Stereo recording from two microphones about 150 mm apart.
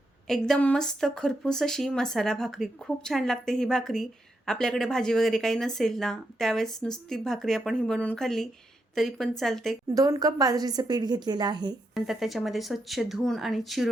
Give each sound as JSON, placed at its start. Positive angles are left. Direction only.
{"t": 0.3, "sound": "speech", "side_deg": 5}
{"t": 9.9, "sound": "a woman's voice", "side_deg": -25}
{"t": 11.9, "sound": "speech", "side_deg": 0}